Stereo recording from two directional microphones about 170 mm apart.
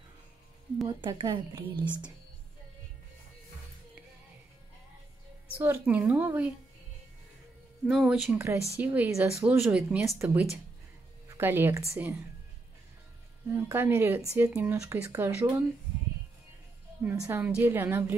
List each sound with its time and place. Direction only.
0.8 s a woman's voice: 30° right (ahead or behind)
5.6 s speech: 10° right (ahead or behind)
7.8 s speech: 5° right (ahead or behind)
13.5 s speech: 15° right (ahead or behind)
17.0 s speech: 15° right (ahead or behind)